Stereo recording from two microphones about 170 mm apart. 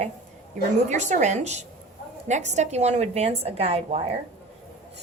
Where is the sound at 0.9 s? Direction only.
45° right (ahead or behind).